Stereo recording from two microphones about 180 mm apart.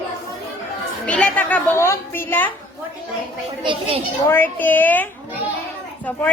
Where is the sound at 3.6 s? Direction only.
30° right (ahead or behind).